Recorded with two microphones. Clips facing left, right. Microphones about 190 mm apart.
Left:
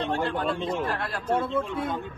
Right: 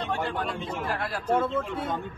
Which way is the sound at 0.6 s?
10° right (ahead or behind).